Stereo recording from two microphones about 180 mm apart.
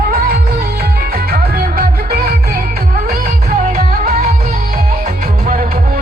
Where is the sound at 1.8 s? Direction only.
55° right (ahead or behind).